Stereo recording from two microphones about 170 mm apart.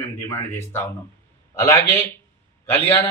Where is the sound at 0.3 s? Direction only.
15° left (ahead or behind).